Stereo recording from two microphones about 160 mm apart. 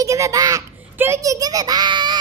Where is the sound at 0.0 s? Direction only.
20° right (ahead or behind).